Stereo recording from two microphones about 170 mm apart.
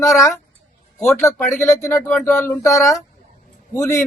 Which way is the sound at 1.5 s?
15° left (ahead or behind).